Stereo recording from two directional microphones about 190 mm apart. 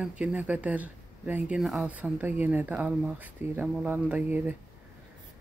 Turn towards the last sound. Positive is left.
turn(degrees=-10)  # may be behind; listen again after turning